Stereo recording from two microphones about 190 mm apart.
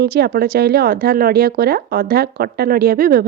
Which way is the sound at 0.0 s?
55° right (ahead or behind).